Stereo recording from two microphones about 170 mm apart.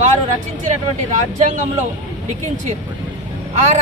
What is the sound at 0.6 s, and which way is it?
Speech, 45° right (ahead or behind).